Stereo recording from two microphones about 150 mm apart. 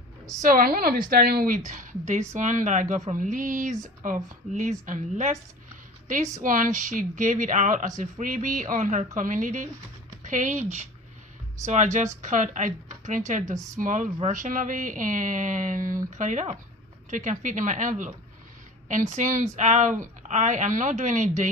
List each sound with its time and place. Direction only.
0.4 s a woman's voice: 75° right (ahead or behind)
1.7 s speech: 60° right (ahead or behind)